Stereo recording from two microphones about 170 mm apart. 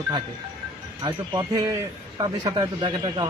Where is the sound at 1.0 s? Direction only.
20° right (ahead or behind).